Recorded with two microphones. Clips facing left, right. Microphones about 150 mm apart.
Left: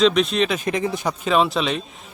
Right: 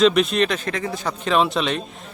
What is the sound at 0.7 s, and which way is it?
Speech, 20° left (ahead or behind).